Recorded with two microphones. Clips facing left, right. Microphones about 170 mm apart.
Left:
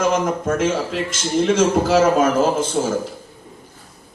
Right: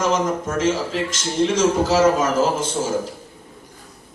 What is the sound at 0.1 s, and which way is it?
A man's voice, 55° left (ahead or behind).